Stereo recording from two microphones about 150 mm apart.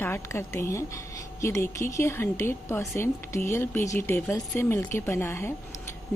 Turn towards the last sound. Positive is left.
turn(degrees=15)  # may be behind; listen again after turning